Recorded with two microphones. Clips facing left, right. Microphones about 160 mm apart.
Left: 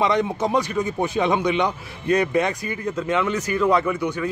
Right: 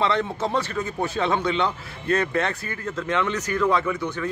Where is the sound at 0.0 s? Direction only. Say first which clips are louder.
Left 3 dB; 15° left (ahead or behind).